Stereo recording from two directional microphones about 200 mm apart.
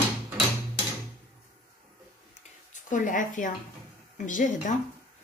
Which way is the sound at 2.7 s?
40° left (ahead or behind).